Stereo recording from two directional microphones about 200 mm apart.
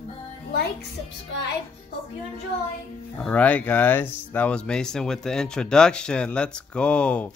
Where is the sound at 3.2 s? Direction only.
5° left (ahead or behind).